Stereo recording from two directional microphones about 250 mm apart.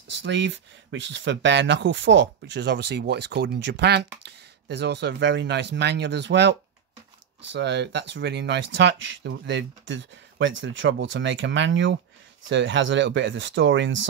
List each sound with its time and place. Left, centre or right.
0.1 s speech: right
7.5 s speech: right